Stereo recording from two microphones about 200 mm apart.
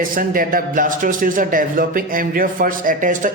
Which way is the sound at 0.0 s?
45° right (ahead or behind).